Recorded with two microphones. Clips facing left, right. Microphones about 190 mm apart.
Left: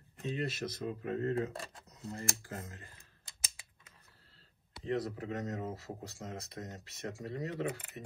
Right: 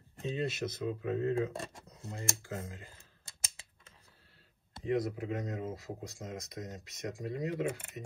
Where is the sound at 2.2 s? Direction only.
25° right (ahead or behind).